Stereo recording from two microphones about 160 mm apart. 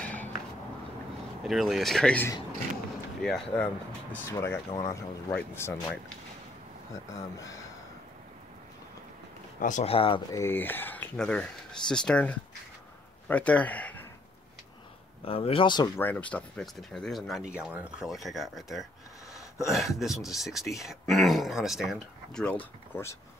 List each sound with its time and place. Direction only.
1.4 s speech: centre (ahead or behind); by 5.8 s 15° left (ahead or behind)
6.9 s speech: 20° left (ahead or behind)
9.6 s speech: 50° left (ahead or behind)
9.9 s speech: 35° left (ahead or behind)
10.3 s speech: 15° left (ahead or behind)
15.2 s speech: 35° left (ahead or behind)
16.0 s speech: 10° left (ahead or behind)